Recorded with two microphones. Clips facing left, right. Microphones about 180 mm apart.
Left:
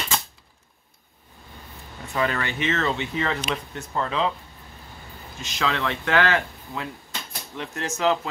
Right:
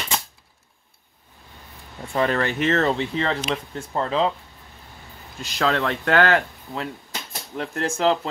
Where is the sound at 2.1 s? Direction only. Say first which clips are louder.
Right 4 dB; 40° right (ahead or behind).